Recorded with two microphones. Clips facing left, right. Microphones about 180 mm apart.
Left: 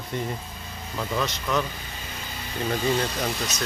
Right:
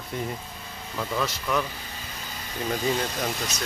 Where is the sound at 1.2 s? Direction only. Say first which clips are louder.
Left 1 dB; 5° right (ahead or behind).